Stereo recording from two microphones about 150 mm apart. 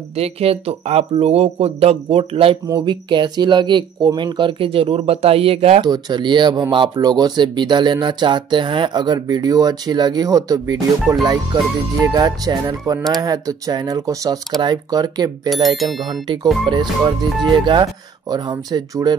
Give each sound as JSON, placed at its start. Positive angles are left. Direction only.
{"t": 0.1, "sound": "speech", "side_deg": -40}
{"t": 5.8, "sound": "speech", "side_deg": -30}
{"t": 15.5, "sound": "speech", "side_deg": 0}
{"t": 16.6, "sound": "speech", "side_deg": -35}